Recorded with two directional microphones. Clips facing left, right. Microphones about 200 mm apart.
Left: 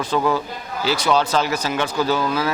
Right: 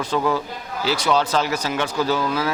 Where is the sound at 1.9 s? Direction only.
30° left (ahead or behind).